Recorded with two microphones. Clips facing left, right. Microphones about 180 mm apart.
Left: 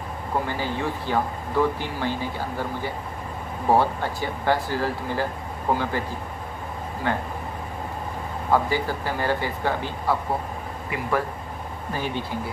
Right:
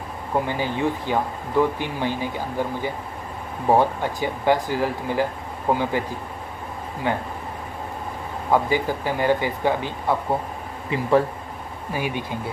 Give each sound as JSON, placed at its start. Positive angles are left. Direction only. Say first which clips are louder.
{"t": 0.5, "sound": "speech", "louder": "right 3 dB", "side_deg": -15}
{"t": 7.0, "sound": "speech", "louder": "right 2 dB", "side_deg": -15}
{"t": 8.5, "sound": "speech", "louder": "right 2 dB", "side_deg": -15}
{"t": 10.9, "sound": "speech", "louder": "right 7 dB", "side_deg": -25}
{"t": 11.9, "sound": "speech", "louder": "right 2 dB", "side_deg": -15}